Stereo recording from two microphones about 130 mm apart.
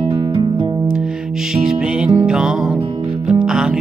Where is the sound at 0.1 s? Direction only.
40° right (ahead or behind).